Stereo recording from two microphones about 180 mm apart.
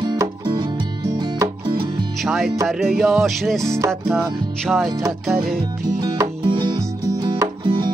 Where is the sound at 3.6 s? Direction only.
15° right (ahead or behind).